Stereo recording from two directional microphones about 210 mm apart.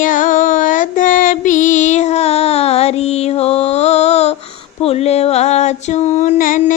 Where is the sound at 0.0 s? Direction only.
40° left (ahead or behind).